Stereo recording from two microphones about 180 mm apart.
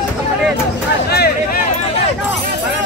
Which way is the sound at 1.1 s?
60° left (ahead or behind).